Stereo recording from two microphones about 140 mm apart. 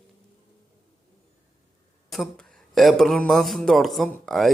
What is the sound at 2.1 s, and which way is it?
A man's voice, centre (ahead or behind).